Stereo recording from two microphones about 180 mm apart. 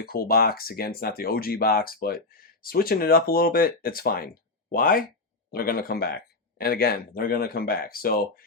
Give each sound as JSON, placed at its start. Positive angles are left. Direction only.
{"t": 0.0, "sound": "speech", "side_deg": 55}